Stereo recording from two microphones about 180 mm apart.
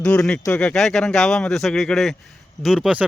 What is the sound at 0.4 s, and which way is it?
Speech, 10° left (ahead or behind).